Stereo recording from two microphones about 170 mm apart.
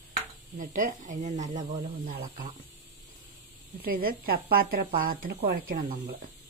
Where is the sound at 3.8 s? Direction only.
60° right (ahead or behind).